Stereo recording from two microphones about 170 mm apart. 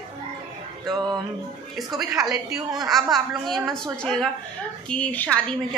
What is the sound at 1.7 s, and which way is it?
A woman's voice, centre (ahead or behind).